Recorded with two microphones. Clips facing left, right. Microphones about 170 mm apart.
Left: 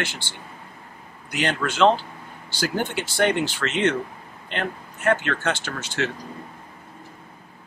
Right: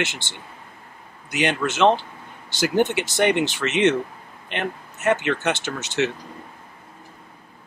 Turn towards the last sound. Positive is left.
turn(degrees=-20)  # may be behind; listen again after turning